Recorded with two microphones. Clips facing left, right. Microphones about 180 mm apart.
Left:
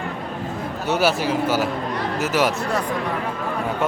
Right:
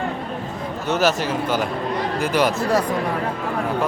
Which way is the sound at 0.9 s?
10° left (ahead or behind).